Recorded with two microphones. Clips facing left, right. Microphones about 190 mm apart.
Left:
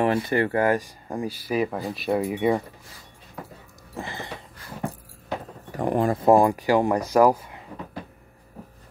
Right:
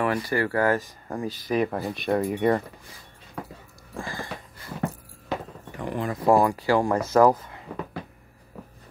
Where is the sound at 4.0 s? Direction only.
20° left (ahead or behind).